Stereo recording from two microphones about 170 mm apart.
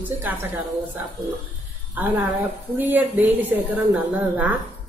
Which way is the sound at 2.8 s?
10° right (ahead or behind).